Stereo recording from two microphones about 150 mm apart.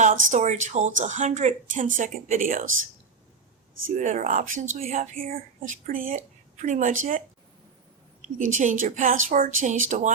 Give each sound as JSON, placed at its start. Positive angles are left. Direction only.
{"t": 0.0, "sound": "speech", "side_deg": -55}
{"t": 3.9, "sound": "a woman's voice", "side_deg": -55}
{"t": 4.8, "sound": "speech", "side_deg": -45}
{"t": 5.2, "sound": "a woman's voice", "side_deg": -70}
{"t": 8.4, "sound": "a woman's voice", "side_deg": -55}